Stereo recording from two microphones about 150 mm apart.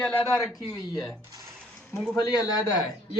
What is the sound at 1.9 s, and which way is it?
Speech, centre (ahead or behind).